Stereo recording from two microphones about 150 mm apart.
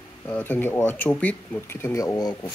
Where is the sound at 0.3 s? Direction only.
15° left (ahead or behind).